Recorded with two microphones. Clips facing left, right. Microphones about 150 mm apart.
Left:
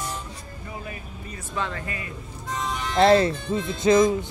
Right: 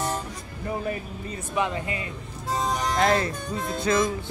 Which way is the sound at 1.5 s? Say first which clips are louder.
Right 3 dB; 15° right (ahead or behind).